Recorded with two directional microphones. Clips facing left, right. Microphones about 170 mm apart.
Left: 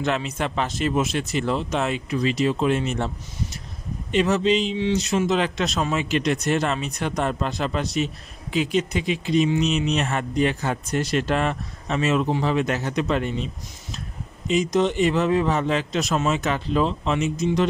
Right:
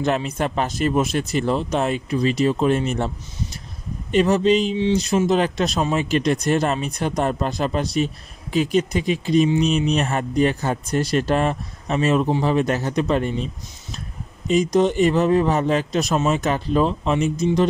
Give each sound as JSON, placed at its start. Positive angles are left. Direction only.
{"t": 0.0, "sound": "speech", "side_deg": -45}
{"t": 4.1, "sound": "speech", "side_deg": -45}
{"t": 4.7, "sound": "speech", "side_deg": -30}
{"t": 14.5, "sound": "speech", "side_deg": -45}